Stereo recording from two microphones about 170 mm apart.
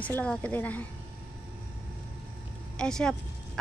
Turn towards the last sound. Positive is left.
turn(degrees=5)  # may be behind; listen again after turning